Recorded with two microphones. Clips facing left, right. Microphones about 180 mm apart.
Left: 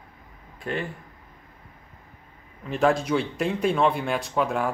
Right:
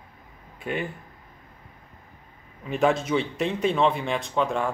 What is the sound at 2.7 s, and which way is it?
A man's voice, centre (ahead or behind).